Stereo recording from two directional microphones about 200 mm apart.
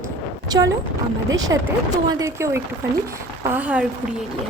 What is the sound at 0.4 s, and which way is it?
A woman's voice, 20° right (ahead or behind).